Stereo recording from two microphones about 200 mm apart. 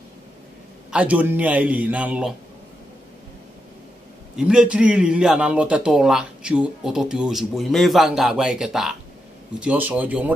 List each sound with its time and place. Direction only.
0.9 s a man's voice: 5° right (ahead or behind)
4.4 s a man's voice: 5° right (ahead or behind)